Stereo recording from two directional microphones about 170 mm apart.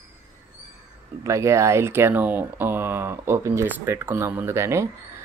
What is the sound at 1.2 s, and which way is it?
Speech, 15° right (ahead or behind).